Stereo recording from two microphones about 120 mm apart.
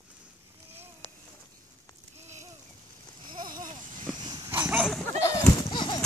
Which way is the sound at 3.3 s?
35° right (ahead or behind).